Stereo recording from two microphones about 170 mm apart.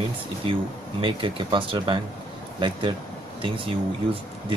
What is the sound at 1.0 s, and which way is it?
Speech, 30° right (ahead or behind).